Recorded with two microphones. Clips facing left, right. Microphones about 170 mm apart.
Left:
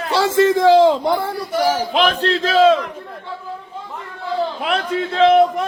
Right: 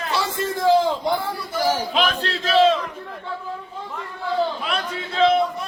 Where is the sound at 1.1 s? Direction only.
60° left (ahead or behind).